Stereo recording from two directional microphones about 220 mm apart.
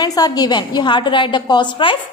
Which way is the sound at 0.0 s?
20° left (ahead or behind).